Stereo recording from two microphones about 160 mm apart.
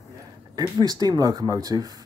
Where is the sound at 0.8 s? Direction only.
25° right (ahead or behind).